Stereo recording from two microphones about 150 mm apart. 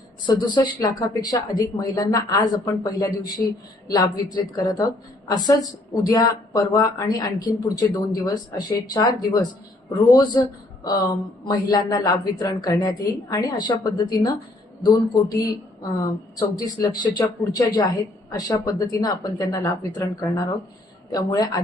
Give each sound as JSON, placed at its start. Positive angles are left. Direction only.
{"t": 0.3, "sound": "speech", "side_deg": 30}
{"t": 10.8, "sound": "speech", "side_deg": 25}